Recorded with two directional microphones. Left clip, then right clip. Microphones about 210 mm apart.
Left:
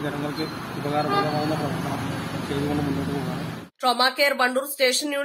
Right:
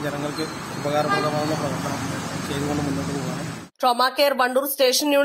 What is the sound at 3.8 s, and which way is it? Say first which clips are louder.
Speech: right 2 dB; 25° right (ahead or behind).